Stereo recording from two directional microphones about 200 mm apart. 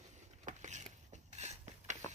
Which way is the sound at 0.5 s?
35° right (ahead or behind).